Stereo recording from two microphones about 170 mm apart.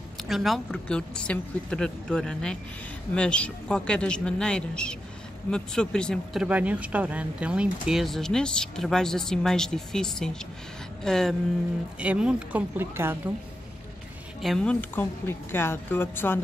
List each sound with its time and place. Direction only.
0.2 s speech: centre (ahead or behind)
6.4 s speech: 5° right (ahead or behind)
14.4 s speech: 5° left (ahead or behind)